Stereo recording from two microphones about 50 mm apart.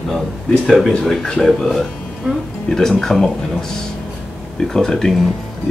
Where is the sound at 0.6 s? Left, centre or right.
Centre.